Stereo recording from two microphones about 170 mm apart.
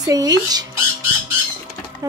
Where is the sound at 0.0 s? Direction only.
20° right (ahead or behind).